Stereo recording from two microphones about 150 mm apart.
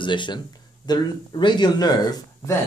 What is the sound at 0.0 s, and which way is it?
Speech, 30° left (ahead or behind).